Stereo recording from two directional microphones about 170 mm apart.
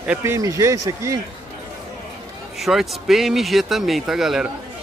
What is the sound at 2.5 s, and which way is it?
Speech, centre (ahead or behind).